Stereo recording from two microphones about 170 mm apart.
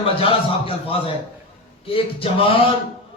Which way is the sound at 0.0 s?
35° left (ahead or behind).